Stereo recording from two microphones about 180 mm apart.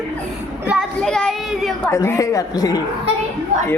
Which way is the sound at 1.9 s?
15° left (ahead or behind).